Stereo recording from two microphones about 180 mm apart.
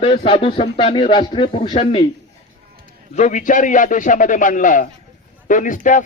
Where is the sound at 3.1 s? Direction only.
40° left (ahead or behind).